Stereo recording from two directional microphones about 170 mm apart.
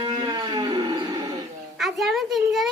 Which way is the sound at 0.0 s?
30° right (ahead or behind).